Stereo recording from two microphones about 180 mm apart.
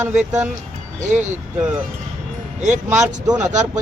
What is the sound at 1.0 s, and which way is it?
Speech, 40° right (ahead or behind).